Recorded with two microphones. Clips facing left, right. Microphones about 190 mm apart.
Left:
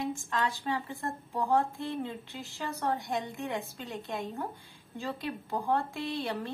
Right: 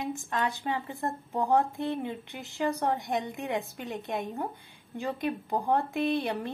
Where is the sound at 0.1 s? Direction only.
20° right (ahead or behind).